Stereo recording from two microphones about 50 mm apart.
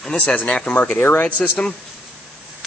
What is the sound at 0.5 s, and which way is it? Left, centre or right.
Speech, centre.